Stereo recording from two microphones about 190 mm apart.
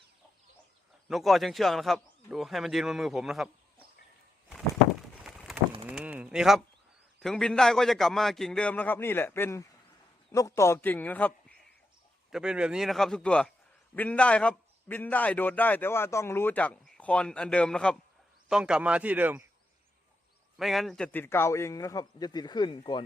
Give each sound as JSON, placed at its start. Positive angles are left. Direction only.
{"t": 1.0, "sound": "speech", "side_deg": 0}
{"t": 5.2, "sound": "pigeon", "side_deg": 0}
{"t": 5.8, "sound": "a sound", "side_deg": -5}
{"t": 7.2, "sound": "a man's voice", "side_deg": 5}
{"t": 12.3, "sound": "a man's voice", "side_deg": -5}
{"t": 20.6, "sound": "a man's voice", "side_deg": 0}